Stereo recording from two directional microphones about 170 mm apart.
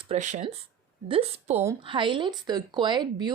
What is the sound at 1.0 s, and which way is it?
Speech, 35° right (ahead or behind).